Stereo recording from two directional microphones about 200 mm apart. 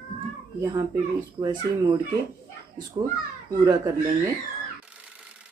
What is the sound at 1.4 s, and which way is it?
Speech, 20° right (ahead or behind).